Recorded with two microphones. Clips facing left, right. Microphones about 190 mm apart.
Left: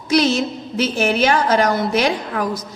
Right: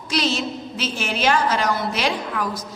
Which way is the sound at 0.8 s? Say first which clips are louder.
Left 5 dB; 55° left (ahead or behind).